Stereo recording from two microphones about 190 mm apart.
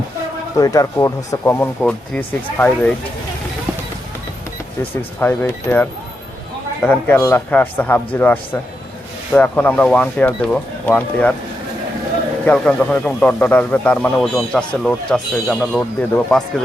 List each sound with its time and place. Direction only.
0.6 s speech: 15° left (ahead or behind)
4.8 s speech: 10° left (ahead or behind)
12.5 s a man's voice: 5° left (ahead or behind)